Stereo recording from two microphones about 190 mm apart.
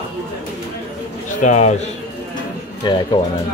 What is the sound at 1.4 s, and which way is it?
Speech, 40° left (ahead or behind).